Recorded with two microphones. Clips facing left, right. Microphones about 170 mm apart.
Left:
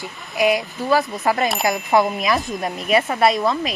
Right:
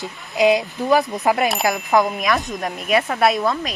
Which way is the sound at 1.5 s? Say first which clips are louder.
Even; centre (ahead or behind).